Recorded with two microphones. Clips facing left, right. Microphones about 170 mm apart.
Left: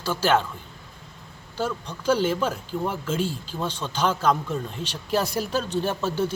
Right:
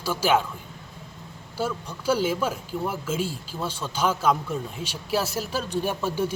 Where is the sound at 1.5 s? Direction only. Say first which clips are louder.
Even; 10° right (ahead or behind).